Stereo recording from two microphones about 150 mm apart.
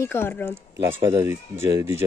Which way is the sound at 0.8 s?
15° right (ahead or behind).